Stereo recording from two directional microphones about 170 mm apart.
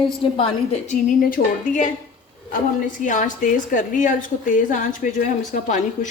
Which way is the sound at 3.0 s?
50° left (ahead or behind).